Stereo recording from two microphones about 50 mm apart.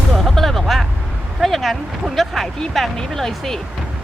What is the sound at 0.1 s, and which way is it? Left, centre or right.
Music, centre.